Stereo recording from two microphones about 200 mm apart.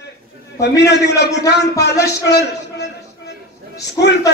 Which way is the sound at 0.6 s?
55° left (ahead or behind).